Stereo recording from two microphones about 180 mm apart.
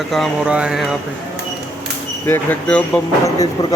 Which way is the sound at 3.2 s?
20° left (ahead or behind).